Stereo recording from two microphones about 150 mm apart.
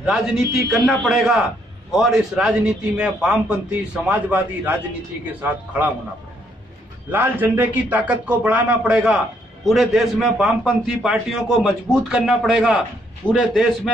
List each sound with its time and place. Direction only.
0.0 s a man's voice: centre (ahead or behind)
7.1 s a man's voice: 15° right (ahead or behind)